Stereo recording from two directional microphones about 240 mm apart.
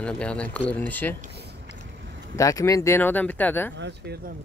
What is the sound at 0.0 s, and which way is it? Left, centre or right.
Speech, centre.